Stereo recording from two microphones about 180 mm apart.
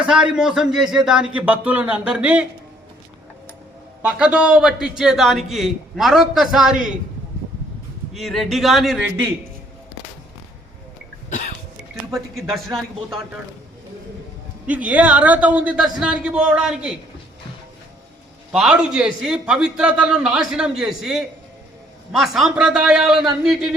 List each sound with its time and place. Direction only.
0.0 s a man's voice: 5° right (ahead or behind)
4.0 s a man's voice: 5° right (ahead or behind)
8.1 s a man's voice: centre (ahead or behind)
11.3 s cough: 40° left (ahead or behind)
12.1 s a man's voice: centre (ahead or behind)
14.7 s a man's voice: 5° right (ahead or behind)
18.5 s a man's voice: 5° right (ahead or behind)